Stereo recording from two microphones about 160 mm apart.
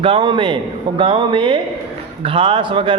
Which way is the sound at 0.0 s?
35° right (ahead or behind).